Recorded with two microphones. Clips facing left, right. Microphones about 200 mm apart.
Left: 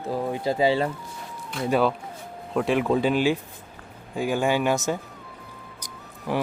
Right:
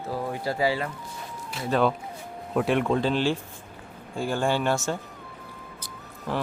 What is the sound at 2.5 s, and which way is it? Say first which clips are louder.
Speech: left 1 dB; centre (ahead or behind).